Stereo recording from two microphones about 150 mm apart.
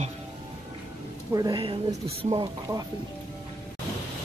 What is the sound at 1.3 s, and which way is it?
A woman's voice, 30° right (ahead or behind).